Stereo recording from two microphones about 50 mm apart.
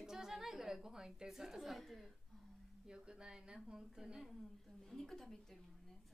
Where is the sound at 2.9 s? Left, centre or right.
Centre.